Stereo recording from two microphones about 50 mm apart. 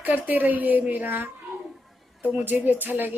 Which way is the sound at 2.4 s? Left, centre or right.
Right.